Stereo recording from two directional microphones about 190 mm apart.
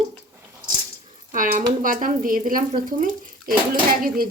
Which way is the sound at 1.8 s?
45° right (ahead or behind).